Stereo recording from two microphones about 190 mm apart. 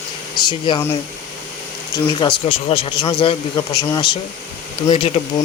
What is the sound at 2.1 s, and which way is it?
Speech, 25° left (ahead or behind).